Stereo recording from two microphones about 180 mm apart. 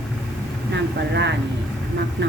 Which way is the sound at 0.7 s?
80° right.